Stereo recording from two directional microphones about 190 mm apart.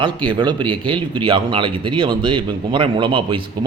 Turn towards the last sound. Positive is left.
turn(degrees=-25)  # may be behind; listen again after turning